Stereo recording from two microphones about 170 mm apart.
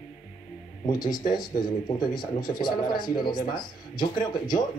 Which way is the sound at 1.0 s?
25° left (ahead or behind).